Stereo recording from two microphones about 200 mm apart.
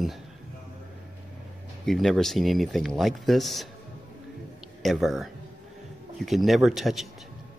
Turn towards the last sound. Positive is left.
turn(degrees=0)  # may be behind; listen again after turning